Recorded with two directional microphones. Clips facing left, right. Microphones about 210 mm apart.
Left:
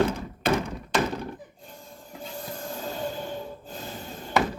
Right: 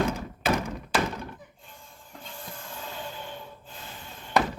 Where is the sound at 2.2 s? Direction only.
40° left (ahead or behind).